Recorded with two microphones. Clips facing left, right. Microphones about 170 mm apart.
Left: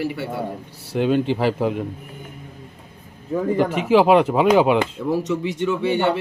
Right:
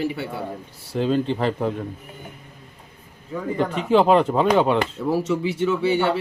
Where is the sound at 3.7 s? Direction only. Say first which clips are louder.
Left 1 dB; 5° left (ahead or behind).